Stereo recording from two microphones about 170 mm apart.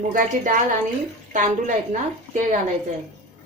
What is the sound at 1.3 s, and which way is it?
Speech, 50° right (ahead or behind).